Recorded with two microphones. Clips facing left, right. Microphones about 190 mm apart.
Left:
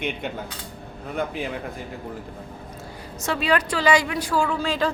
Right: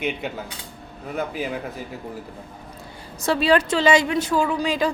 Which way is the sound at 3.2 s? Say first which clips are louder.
Right 4 dB; 30° right (ahead or behind).